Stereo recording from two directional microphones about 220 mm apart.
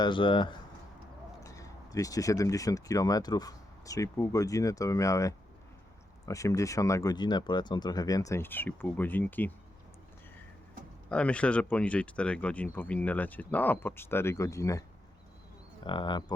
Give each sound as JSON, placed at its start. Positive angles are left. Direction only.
{"t": 0.0, "sound": "speech", "side_deg": 20}
{"t": 11.1, "sound": "speech", "side_deg": 5}